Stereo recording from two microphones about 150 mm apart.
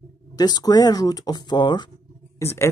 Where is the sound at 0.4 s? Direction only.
25° left (ahead or behind).